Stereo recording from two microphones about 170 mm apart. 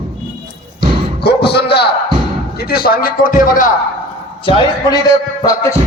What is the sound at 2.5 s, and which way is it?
Speech, 65° left (ahead or behind).